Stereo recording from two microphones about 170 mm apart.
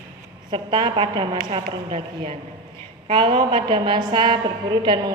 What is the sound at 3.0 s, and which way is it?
A woman's voice, 30° right (ahead or behind).